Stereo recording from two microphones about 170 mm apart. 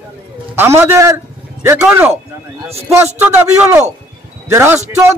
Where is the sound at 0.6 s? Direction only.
15° right (ahead or behind).